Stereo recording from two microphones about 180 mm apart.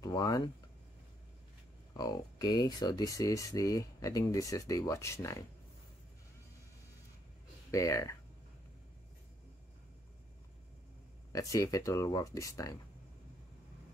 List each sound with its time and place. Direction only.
0.0 s speech: 20° left (ahead or behind)
2.0 s speech: 20° left (ahead or behind)
7.7 s speech: 15° left (ahead or behind)
11.3 s speech: 15° left (ahead or behind)